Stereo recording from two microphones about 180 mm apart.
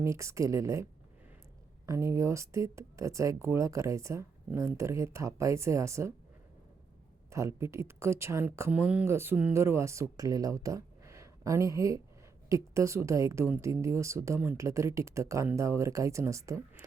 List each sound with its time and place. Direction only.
0.0 s speech: 15° right (ahead or behind)
1.9 s speech: 15° right (ahead or behind)
7.3 s speech: 15° right (ahead or behind)